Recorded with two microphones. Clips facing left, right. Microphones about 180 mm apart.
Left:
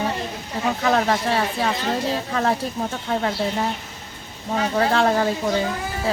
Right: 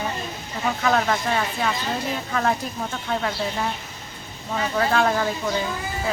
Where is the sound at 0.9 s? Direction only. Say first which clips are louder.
Left 2 dB; 30° left (ahead or behind).